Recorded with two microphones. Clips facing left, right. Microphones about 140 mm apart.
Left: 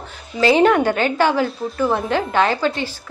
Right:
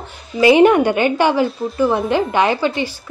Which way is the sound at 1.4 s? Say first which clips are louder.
Right 3 dB; centre (ahead or behind).